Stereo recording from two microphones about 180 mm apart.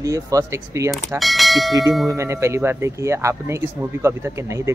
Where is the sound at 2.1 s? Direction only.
15° right (ahead or behind).